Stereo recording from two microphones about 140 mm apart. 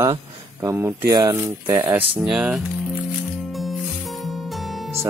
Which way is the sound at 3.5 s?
Centre (ahead or behind).